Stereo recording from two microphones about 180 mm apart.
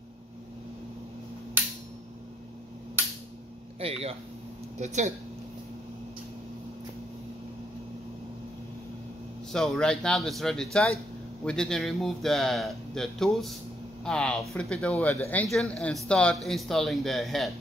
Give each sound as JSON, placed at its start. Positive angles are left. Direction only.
{"t": 3.8, "sound": "speech", "side_deg": -35}
{"t": 9.5, "sound": "speech", "side_deg": 5}